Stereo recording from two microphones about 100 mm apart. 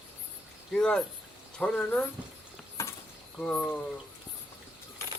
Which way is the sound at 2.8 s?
25° left (ahead or behind).